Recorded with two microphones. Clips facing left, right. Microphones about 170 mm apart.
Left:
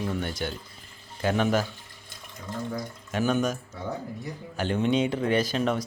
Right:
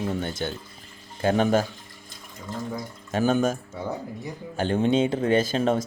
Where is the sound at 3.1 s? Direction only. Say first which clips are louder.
Right 3 dB; 35° right (ahead or behind).